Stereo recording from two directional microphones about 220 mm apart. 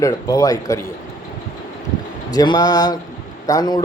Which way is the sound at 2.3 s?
20° left (ahead or behind).